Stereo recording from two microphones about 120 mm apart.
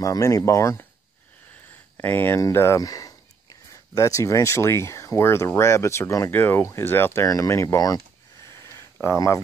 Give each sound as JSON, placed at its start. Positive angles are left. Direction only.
{"t": 0.0, "sound": "speech", "side_deg": 25}
{"t": 2.0, "sound": "speech", "side_deg": 15}
{"t": 7.2, "sound": "a sound", "side_deg": 25}
{"t": 9.0, "sound": "speech", "side_deg": 25}